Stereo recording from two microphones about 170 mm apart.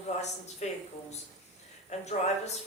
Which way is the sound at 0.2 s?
40° left (ahead or behind).